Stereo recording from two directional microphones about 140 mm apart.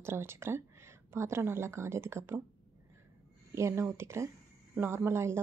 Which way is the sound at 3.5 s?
20° right (ahead or behind).